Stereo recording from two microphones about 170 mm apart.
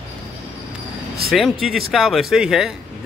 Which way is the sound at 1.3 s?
Centre (ahead or behind).